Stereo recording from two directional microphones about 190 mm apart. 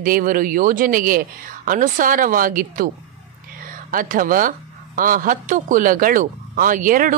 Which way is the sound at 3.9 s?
45° right (ahead or behind).